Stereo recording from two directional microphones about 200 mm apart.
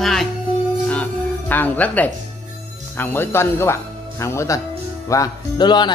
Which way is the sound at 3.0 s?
10° left (ahead or behind).